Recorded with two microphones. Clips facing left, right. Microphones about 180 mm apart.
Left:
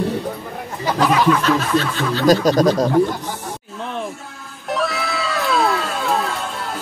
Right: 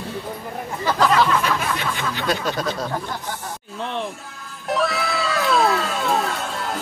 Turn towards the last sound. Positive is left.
turn(degrees=0)  # may be behind; listen again after turning